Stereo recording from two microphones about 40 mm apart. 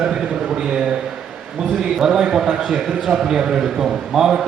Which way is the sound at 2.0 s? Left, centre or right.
Centre.